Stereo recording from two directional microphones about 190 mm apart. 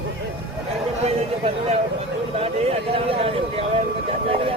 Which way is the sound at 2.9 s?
30° right (ahead or behind).